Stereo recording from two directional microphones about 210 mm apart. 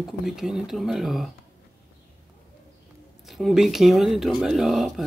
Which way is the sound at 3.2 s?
Centre (ahead or behind).